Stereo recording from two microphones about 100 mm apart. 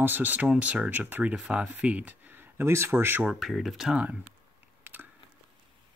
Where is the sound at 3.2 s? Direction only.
Centre (ahead or behind).